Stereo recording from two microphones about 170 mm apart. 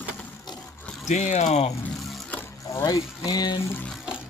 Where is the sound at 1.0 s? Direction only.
45° left (ahead or behind).